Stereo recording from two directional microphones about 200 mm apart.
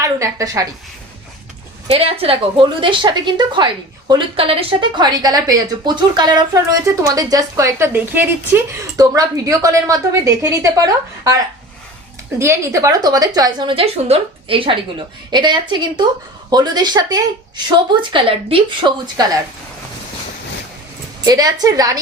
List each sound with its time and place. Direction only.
0.0 s a woman's voice: 15° right (ahead or behind)
1.9 s a woman's voice: 30° right (ahead or behind)
12.4 s a woman's voice: 15° right (ahead or behind)
21.2 s a woman's voice: 20° right (ahead or behind)